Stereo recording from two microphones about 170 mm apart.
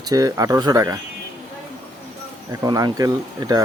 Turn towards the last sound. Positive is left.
turn(degrees=-20)  # may be behind; listen again after turning